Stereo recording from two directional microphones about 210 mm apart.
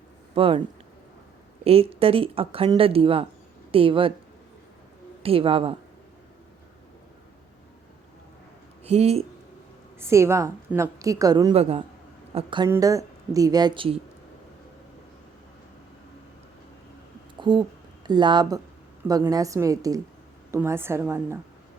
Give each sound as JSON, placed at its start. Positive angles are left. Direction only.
{"t": 0.3, "sound": "speech", "side_deg": -25}
{"t": 1.6, "sound": "a woman's voice", "side_deg": -25}
{"t": 5.2, "sound": "speech", "side_deg": -25}
{"t": 8.8, "sound": "speech", "side_deg": -30}
{"t": 10.0, "sound": "a woman's voice", "side_deg": -15}
{"t": 11.5, "sound": "speech", "side_deg": -30}
{"t": 12.6, "sound": "a woman's voice", "side_deg": -15}
{"t": 17.4, "sound": "a woman's voice", "side_deg": -20}